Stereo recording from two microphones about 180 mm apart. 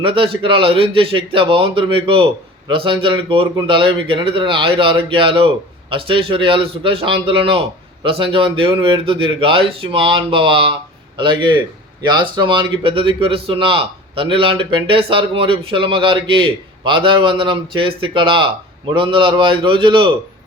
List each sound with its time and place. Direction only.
0.0 s a man's voice: 30° right (ahead or behind)